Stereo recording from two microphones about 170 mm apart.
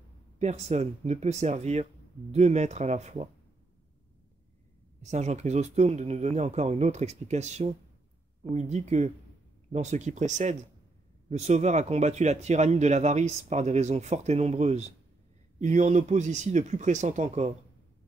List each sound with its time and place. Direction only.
0.4 s speech: 40° right (ahead or behind)
5.0 s speech: 40° right (ahead or behind)